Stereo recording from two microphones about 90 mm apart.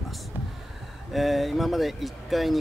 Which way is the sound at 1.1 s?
Centre (ahead or behind).